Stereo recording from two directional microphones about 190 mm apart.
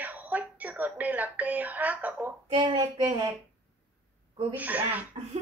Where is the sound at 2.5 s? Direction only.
25° right (ahead or behind).